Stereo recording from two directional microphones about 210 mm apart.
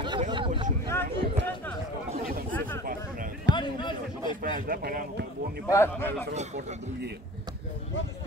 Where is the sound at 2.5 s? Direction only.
10° left (ahead or behind).